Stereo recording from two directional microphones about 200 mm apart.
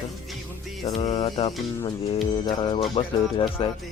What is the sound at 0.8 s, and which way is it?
Music, 25° left (ahead or behind).